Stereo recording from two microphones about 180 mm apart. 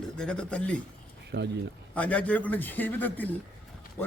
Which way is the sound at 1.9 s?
5° left (ahead or behind).